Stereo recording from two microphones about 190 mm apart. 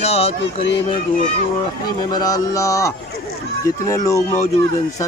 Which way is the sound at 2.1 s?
20° left (ahead or behind).